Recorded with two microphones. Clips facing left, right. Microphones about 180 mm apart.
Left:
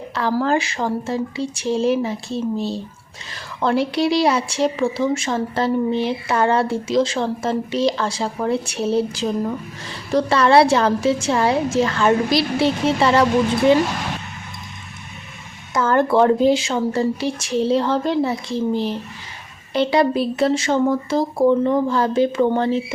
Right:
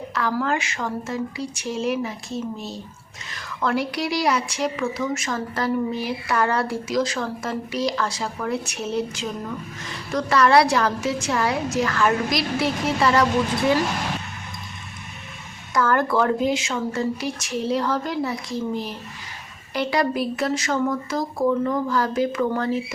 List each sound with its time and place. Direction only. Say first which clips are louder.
0.1 s speech: left 5 dB; 30° left (ahead or behind)
15.7 s speech: left 4 dB; 25° left (ahead or behind)